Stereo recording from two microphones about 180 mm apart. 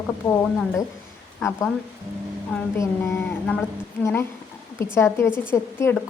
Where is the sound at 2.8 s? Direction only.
15° left (ahead or behind).